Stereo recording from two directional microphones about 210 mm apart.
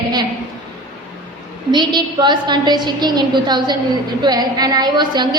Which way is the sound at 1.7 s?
20° right (ahead or behind).